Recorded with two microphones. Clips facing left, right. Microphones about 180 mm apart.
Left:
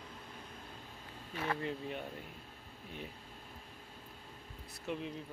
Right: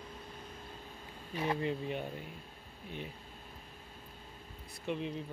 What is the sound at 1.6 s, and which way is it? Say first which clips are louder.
Speech: right 4 dB; centre (ahead or behind).